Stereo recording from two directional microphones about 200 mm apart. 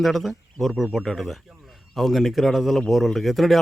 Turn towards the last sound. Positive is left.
turn(degrees=0)  # may be behind; listen again after turning